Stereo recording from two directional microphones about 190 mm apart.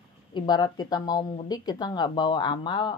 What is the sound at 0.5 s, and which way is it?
Speech, 20° left (ahead or behind).